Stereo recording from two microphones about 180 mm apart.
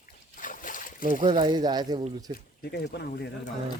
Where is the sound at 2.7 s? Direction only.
65° left (ahead or behind).